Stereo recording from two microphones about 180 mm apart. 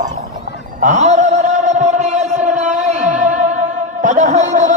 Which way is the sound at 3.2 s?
45° right (ahead or behind).